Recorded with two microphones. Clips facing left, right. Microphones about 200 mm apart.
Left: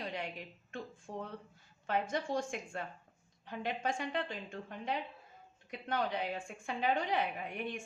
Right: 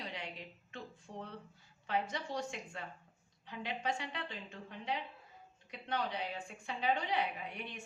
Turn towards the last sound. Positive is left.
turn(degrees=50)  # may be behind; listen again after turning